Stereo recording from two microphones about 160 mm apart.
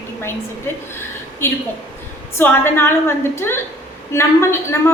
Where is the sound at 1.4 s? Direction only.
15° left (ahead or behind).